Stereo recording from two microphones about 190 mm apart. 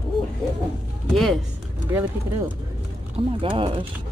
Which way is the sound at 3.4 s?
25° right (ahead or behind).